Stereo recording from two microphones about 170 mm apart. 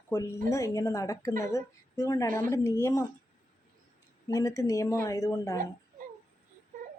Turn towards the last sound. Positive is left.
turn(degrees=15)  # may be behind; listen again after turning